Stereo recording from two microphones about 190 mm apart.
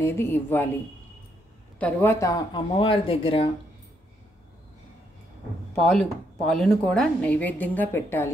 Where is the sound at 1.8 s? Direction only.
10° left (ahead or behind).